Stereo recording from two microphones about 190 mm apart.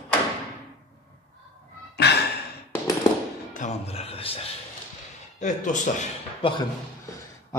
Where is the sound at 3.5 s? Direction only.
40° left (ahead or behind).